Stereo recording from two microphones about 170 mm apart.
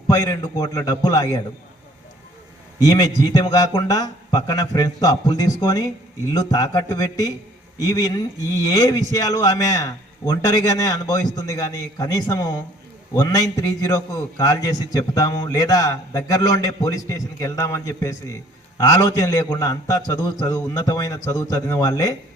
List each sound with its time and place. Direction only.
0.1 s a man's voice: 20° left (ahead or behind)
2.7 s a man's voice: 20° left (ahead or behind)